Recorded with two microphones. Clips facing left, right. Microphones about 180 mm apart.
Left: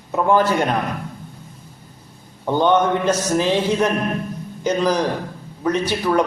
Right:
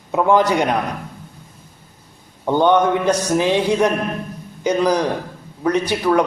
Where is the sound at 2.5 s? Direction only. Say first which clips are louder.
Right 2 dB; 15° right (ahead or behind).